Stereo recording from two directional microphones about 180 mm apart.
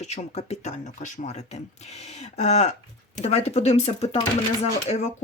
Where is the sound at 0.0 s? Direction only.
35° left (ahead or behind).